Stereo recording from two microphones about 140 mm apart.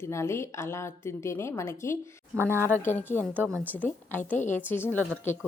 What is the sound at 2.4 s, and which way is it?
Speech, 15° right (ahead or behind).